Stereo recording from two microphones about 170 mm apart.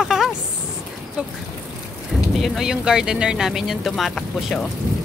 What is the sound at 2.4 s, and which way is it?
Speech, 5° right (ahead or behind).